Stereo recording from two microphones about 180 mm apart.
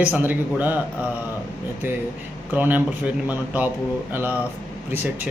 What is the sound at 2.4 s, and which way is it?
Speech, 10° right (ahead or behind).